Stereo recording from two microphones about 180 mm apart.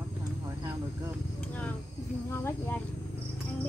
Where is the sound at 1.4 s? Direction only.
5° left (ahead or behind).